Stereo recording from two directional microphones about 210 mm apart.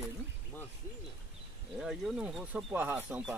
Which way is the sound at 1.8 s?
Centre (ahead or behind).